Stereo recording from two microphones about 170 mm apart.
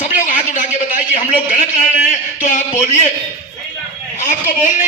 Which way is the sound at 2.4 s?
45° left (ahead or behind).